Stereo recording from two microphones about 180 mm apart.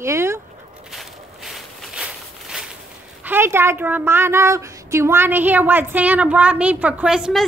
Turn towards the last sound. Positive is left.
turn(degrees=-5)  # may be behind; listen again after turning